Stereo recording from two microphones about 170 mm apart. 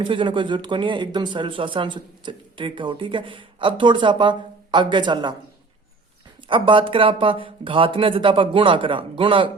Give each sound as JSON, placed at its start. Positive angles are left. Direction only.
{"t": 0.0, "sound": "speech", "side_deg": -30}
{"t": 6.5, "sound": "speech", "side_deg": -30}